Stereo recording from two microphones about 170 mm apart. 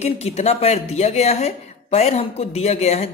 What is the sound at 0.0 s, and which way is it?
Speech, 40° left (ahead or behind).